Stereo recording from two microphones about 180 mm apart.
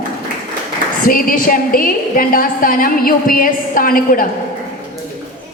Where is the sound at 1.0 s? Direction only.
50° left (ahead or behind).